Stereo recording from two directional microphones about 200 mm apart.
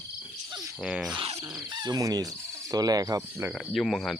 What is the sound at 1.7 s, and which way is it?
Speech, 20° right (ahead or behind).